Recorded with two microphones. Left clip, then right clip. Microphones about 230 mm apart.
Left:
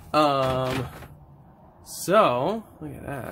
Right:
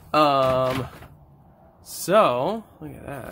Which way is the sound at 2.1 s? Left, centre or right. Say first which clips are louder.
Right 1 dB; centre.